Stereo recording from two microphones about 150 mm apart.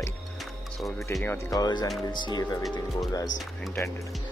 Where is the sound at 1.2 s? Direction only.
20° left (ahead or behind).